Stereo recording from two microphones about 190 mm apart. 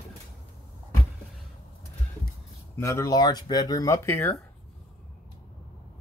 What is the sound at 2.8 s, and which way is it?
Speech, 15° left (ahead or behind).